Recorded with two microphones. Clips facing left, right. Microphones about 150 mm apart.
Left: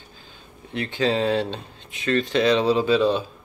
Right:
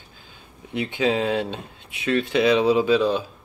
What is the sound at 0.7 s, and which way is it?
Speech, 10° right (ahead or behind).